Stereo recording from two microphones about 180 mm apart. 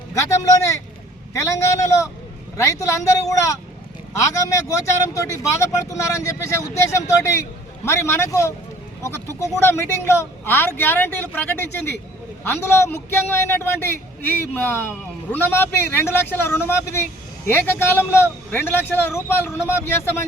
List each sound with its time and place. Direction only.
0.1 s a man's voice: 15° left (ahead or behind)
5.1 s a man's voice: 20° left (ahead or behind)